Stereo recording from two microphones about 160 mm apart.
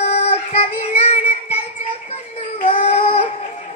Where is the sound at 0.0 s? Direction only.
40° left (ahead or behind).